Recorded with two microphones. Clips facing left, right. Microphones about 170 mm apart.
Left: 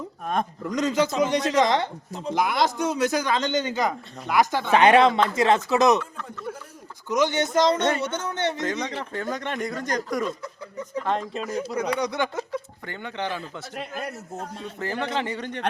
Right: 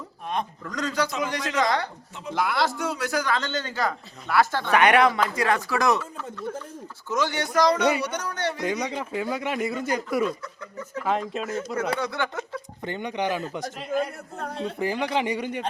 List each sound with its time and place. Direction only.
0.6 s a man's voice: 20° left (ahead or behind)
4.7 s a man's voice: 25° left (ahead or behind)
7.1 s a man's voice: 20° left (ahead or behind)
8.6 s speech: 10° right (ahead or behind)
11.9 s speech: 15° left (ahead or behind)
12.8 s speech: 20° right (ahead or behind)
13.7 s a man's voice: 50° left (ahead or behind)
14.3 s a man's voice: 65° right (ahead or behind)
14.8 s speech: 15° right (ahead or behind)